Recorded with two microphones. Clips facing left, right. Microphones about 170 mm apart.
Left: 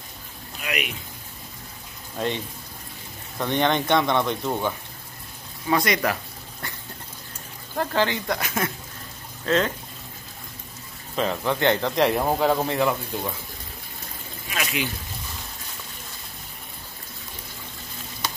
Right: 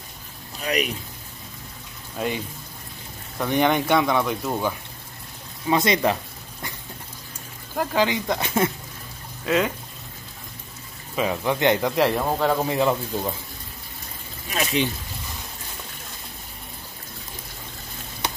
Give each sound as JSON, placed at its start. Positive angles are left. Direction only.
{"t": 0.6, "sound": "speech", "side_deg": -35}
{"t": 2.1, "sound": "speech", "side_deg": -5}
{"t": 5.7, "sound": "speech", "side_deg": -25}
{"t": 7.7, "sound": "speech", "side_deg": -10}
{"t": 8.4, "sound": "speech", "side_deg": -25}
{"t": 9.5, "sound": "speech", "side_deg": -10}
{"t": 11.1, "sound": "speech", "side_deg": -10}
{"t": 11.9, "sound": "speech", "side_deg": 0}
{"t": 12.6, "sound": "speech", "side_deg": -20}
{"t": 14.5, "sound": "a sound", "side_deg": -35}